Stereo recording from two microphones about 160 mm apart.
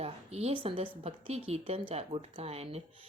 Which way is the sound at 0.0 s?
40° right (ahead or behind).